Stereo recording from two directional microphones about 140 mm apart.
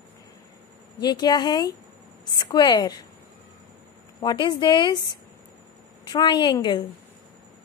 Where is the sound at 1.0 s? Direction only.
30° left (ahead or behind).